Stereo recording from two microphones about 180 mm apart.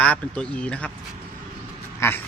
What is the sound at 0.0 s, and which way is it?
Speech, 5° left (ahead or behind).